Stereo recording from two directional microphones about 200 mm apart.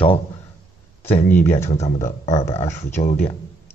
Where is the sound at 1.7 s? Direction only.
35° left (ahead or behind).